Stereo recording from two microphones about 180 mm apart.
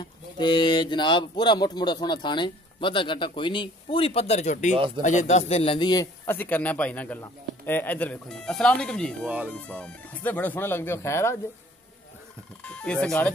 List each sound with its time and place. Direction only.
0.0 s speech: 25° left (ahead or behind); by 4.7 s 40° left (ahead or behind)
4.7 s speech: 30° right (ahead or behind)
5.0 s a man's voice: 40° left (ahead or behind); by 6.0 s 25° left (ahead or behind)
6.2 s a man's voice: 10° left (ahead or behind)
12.6 s speech: 5° left (ahead or behind)